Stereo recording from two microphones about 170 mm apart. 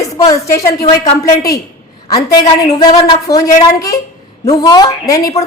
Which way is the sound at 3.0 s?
20° left (ahead or behind).